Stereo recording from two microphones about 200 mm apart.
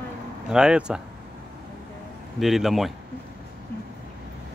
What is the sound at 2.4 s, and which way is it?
Speech, centre (ahead or behind).